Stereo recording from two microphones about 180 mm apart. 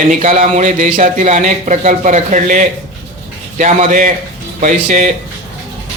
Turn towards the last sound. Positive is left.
turn(degrees=-45)  # may be behind; listen again after turning